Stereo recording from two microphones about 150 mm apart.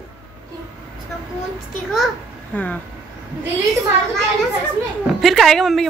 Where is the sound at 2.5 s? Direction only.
10° left (ahead or behind).